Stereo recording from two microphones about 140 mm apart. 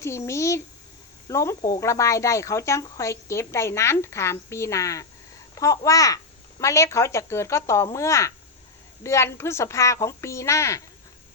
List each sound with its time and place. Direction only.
0.0 s speech: 20° left (ahead or behind)